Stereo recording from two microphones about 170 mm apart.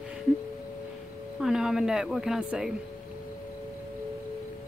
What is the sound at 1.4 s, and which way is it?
Speech, 5° right (ahead or behind).